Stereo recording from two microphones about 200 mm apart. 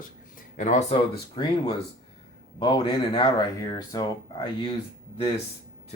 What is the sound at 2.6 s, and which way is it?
Speech, 20° left (ahead or behind).